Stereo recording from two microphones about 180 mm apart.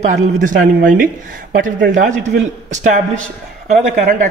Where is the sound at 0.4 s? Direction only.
50° right (ahead or behind).